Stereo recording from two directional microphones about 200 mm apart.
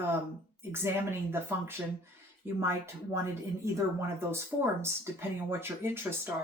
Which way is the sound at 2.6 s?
15° right (ahead or behind).